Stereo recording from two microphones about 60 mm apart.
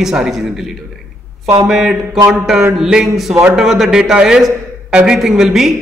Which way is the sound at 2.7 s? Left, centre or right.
Centre.